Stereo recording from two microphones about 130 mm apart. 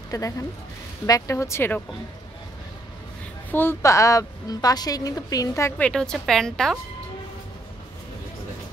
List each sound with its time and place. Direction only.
0.1 s a woman's voice: 25° left (ahead or behind)
3.5 s a woman's voice: 20° left (ahead or behind)
5.8 s a woman's voice: 5° left (ahead or behind)